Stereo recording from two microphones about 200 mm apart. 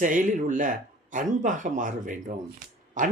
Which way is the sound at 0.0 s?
40° right (ahead or behind).